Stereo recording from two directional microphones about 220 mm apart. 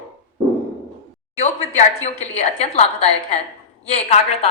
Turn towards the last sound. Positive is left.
turn(degrees=30)  # may be behind; listen again after turning